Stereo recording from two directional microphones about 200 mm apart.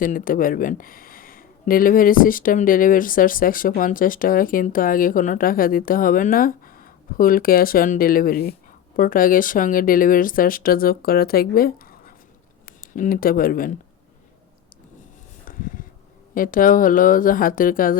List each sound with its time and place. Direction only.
0.0 s speech: 45° left (ahead or behind)
15.4 s a sound: 45° left (ahead or behind)
16.3 s speech: 45° left (ahead or behind)